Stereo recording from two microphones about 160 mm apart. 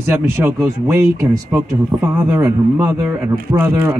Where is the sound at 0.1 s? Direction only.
15° right (ahead or behind).